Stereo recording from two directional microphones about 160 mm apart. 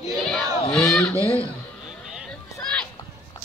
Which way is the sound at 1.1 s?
20° right (ahead or behind).